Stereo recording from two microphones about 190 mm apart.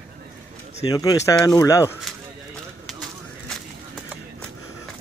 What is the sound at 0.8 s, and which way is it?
Speech, 20° left (ahead or behind).